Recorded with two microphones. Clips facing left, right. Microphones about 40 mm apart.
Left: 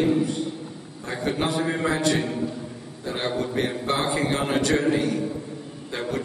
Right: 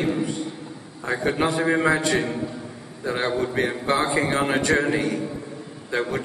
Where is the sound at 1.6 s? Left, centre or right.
Right.